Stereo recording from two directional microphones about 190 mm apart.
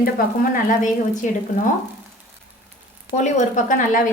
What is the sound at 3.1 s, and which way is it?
Speech, 40° left (ahead or behind).